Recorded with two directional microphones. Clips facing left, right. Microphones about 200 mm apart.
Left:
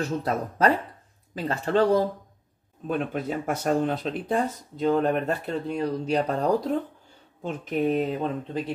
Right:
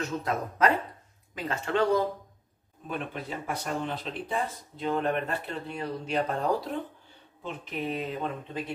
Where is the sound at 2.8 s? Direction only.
45° left (ahead or behind).